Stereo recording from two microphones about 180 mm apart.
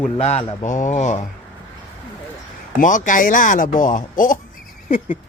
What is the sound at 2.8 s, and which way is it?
Speech, 45° left (ahead or behind).